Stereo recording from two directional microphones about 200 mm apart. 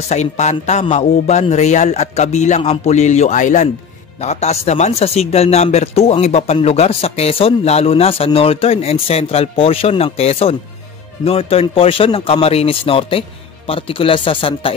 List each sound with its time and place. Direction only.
0.1 s a man's voice: 35° left (ahead or behind)